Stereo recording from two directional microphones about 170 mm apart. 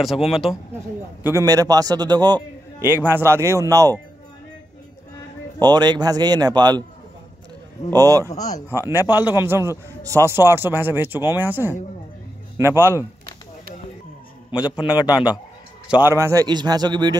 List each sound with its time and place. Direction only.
0.0 s speech: centre (ahead or behind)
1.2 s a man's voice: 20° right (ahead or behind)
2.8 s a man's voice: 10° right (ahead or behind)
5.6 s a man's voice: 25° right (ahead or behind)
7.9 s a man's voice: 20° right (ahead or behind)
14.6 s a man's voice: 25° left (ahead or behind)
15.9 s a man's voice: 10° right (ahead or behind)